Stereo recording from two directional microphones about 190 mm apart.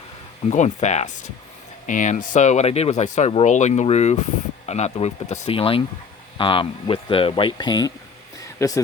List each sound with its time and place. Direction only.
0.5 s speech: 40° left (ahead or behind); by 8.8 s 15° left (ahead or behind)